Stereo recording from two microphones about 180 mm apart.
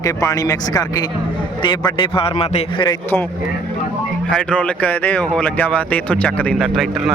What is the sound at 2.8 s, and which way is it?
Speech, 10° left (ahead or behind).